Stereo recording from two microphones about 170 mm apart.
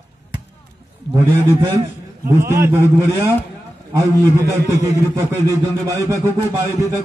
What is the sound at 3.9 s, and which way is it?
A man's voice, 15° right (ahead or behind).